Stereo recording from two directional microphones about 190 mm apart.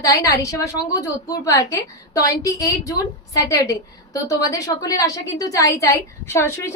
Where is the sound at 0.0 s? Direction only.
15° left (ahead or behind).